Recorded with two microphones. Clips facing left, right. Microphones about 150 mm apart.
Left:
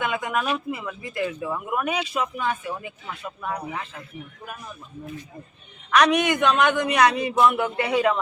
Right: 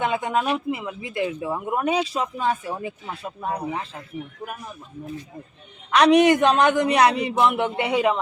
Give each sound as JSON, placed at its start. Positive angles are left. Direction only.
{"t": 0.0, "sound": "speech", "side_deg": -30}
{"t": 5.9, "sound": "speech", "side_deg": -30}